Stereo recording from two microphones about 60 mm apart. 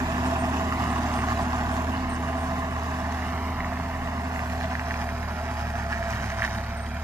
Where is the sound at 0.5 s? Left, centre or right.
Right.